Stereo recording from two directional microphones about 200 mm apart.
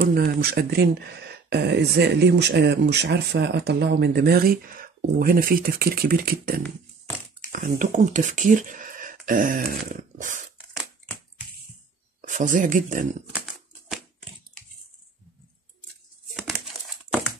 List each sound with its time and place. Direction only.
0.0 s speech: 45° right (ahead or behind)
9.8 s a sound: 40° right (ahead or behind)
12.2 s speech: 40° right (ahead or behind)